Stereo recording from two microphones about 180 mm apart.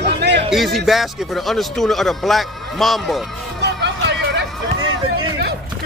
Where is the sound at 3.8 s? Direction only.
70° right (ahead or behind).